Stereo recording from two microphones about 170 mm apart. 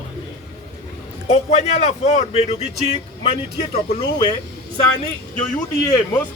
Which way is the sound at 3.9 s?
30° left (ahead or behind).